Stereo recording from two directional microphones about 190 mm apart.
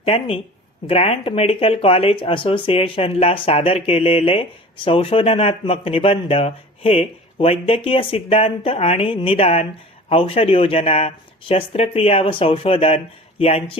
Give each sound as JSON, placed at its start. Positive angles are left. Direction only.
{"t": 0.0, "sound": "speech", "side_deg": 30}